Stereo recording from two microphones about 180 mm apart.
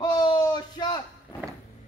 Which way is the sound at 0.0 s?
25° left (ahead or behind).